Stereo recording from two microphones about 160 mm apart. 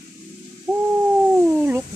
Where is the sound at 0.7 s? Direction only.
5° left (ahead or behind).